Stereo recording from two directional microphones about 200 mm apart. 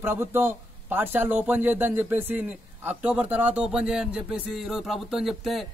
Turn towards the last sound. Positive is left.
turn(degrees=0)  # may be behind; listen again after turning